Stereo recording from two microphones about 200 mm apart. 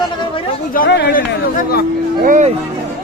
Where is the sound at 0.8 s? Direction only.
55° left (ahead or behind).